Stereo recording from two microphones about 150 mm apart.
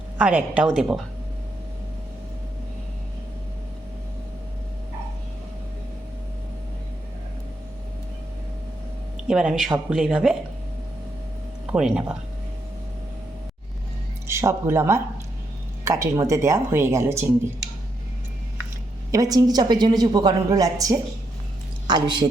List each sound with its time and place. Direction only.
0.2 s speech: 10° right (ahead or behind)
9.2 s speech: 5° right (ahead or behind)
11.6 s speech: 5° right (ahead or behind)
14.3 s a woman's voice: 15° right (ahead or behind)
19.1 s a woman's voice: 25° right (ahead or behind)